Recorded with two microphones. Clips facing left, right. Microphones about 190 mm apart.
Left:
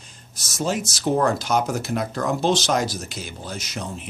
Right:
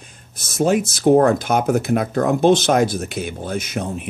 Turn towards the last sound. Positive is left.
turn(degrees=-55)  # may be behind; listen again after turning